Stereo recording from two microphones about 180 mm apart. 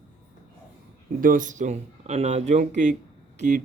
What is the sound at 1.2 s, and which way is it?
Speech, 45° right (ahead or behind).